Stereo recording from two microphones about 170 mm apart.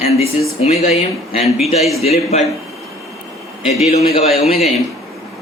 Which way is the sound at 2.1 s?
40° left (ahead or behind).